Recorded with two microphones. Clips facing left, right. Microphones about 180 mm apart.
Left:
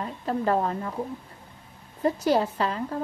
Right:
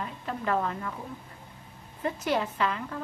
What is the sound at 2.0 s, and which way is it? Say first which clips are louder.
Speech: left 6 dB; 35° left (ahead or behind).